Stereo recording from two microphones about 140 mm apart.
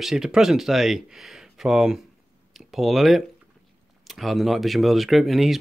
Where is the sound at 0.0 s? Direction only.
Centre (ahead or behind).